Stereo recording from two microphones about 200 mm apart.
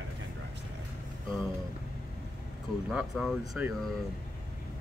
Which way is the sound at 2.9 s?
Centre (ahead or behind).